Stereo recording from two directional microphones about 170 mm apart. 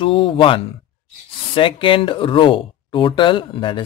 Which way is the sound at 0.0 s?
30° left (ahead or behind).